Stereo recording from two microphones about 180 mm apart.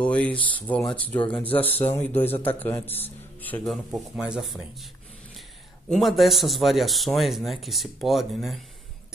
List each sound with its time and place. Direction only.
0.0 s speech: 5° left (ahead or behind)
5.9 s speech: centre (ahead or behind)